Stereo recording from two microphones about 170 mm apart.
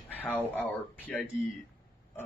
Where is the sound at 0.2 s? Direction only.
10° left (ahead or behind).